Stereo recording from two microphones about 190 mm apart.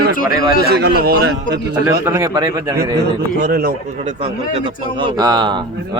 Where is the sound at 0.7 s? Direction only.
60° right (ahead or behind).